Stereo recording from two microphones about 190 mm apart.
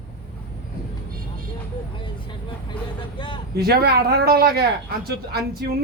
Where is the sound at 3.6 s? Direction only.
55° right (ahead or behind).